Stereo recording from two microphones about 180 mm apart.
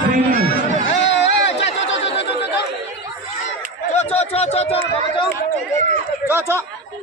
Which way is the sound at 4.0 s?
35° left (ahead or behind).